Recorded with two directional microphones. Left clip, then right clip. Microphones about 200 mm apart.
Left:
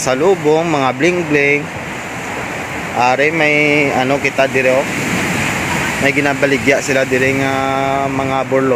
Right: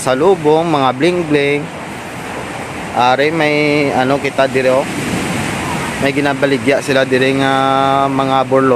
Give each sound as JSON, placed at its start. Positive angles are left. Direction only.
{"t": 0.0, "sound": "speech", "side_deg": -10}
{"t": 3.0, "sound": "speech", "side_deg": -10}
{"t": 6.1, "sound": "speech", "side_deg": -5}